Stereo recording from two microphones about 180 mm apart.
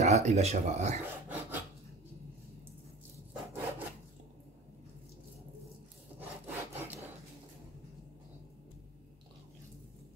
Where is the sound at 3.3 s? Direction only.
10° right (ahead or behind).